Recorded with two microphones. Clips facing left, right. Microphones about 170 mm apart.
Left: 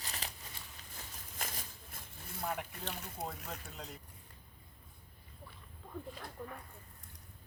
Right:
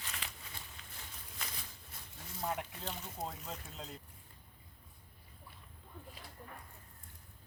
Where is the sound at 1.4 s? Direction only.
50° left (ahead or behind).